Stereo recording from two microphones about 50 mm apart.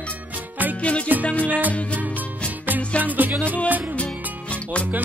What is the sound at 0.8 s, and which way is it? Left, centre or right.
Music, left.